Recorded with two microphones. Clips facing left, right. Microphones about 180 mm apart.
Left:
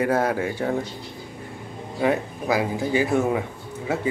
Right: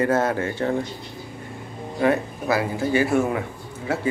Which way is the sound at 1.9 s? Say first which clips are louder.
Right 2 dB; 15° left (ahead or behind).